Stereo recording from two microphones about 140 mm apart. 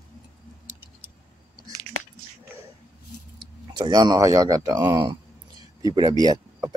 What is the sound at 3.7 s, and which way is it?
Speech, 30° right (ahead or behind).